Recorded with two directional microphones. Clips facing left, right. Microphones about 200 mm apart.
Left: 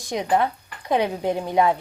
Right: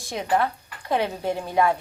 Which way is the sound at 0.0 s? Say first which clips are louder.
Left 2 dB; 15° left (ahead or behind).